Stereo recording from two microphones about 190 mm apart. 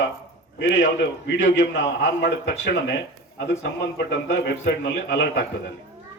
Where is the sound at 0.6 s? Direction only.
65° left (ahead or behind).